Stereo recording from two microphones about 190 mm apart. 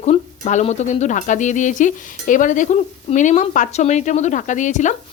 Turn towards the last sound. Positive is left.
turn(degrees=40)  # may be behind; listen again after turning